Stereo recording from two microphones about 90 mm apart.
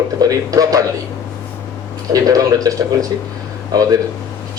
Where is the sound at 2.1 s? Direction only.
40° right (ahead or behind).